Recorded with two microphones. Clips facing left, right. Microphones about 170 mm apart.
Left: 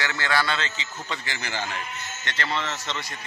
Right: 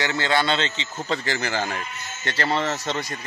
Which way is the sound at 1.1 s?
45° right (ahead or behind).